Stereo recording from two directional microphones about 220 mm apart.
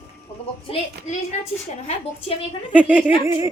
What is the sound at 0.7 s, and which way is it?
Speech, 25° left (ahead or behind).